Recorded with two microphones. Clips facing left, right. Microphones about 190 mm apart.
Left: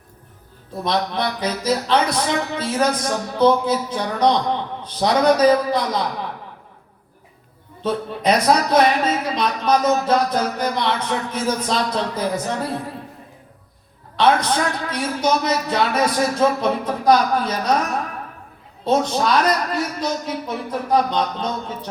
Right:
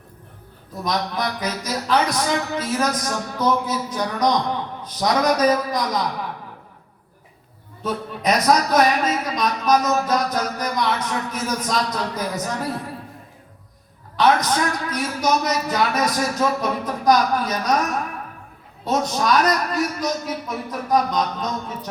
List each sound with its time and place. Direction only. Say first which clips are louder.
0.7 s speech: left 3 dB; 30° left (ahead or behind)
7.8 s speech: left 3 dB; 30° left (ahead or behind)
14.2 s speech: left 1 dB; 30° left (ahead or behind)
18.9 s speech: left 2 dB; 30° left (ahead or behind)